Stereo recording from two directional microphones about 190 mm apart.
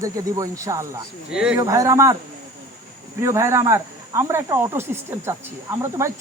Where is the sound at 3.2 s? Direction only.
15° right (ahead or behind).